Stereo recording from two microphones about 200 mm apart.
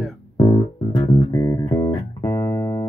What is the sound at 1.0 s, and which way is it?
Music, 30° left (ahead or behind).